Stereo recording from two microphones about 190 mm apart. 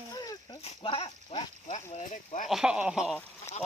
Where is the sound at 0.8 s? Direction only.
25° left (ahead or behind).